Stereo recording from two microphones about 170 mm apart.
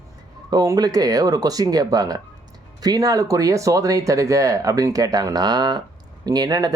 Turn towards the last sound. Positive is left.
turn(degrees=-20)  # may be behind; listen again after turning